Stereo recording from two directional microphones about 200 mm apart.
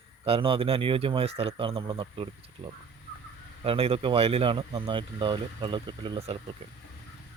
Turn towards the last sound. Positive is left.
turn(degrees=-25)  # may be behind; listen again after turning